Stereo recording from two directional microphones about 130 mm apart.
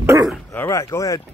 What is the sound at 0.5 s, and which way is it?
Speech, 20° left (ahead or behind).